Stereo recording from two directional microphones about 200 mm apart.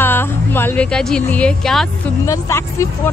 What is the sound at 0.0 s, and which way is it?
A woman's voice, 10° left (ahead or behind).